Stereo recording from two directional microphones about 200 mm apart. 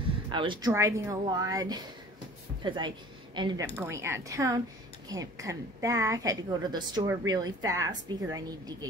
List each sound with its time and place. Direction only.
0.3 s a woman's voice: 25° right (ahead or behind)